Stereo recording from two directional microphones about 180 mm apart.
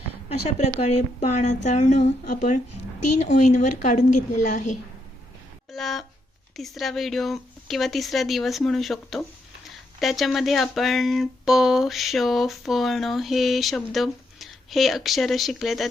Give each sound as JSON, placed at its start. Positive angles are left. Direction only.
{"t": 0.3, "sound": "a woman's voice", "side_deg": 35}
{"t": 5.7, "sound": "a sound", "side_deg": 0}
{"t": 6.6, "sound": "speech", "side_deg": 0}